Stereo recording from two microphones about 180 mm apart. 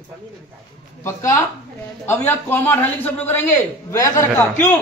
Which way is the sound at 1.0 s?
15° left (ahead or behind).